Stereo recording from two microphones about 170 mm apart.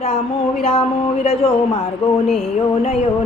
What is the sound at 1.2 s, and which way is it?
Speech, 35° left (ahead or behind).